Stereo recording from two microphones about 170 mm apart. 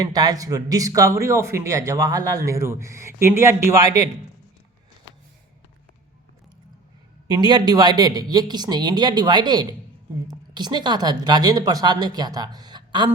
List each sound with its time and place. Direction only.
0.0 s speech: 25° right (ahead or behind)
7.3 s speech: 25° right (ahead or behind)